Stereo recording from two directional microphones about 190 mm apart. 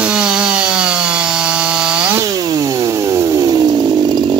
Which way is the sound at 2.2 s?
20° right (ahead or behind).